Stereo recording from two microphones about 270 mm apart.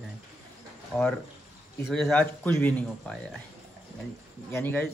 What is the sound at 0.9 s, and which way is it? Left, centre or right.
A man's voice, centre.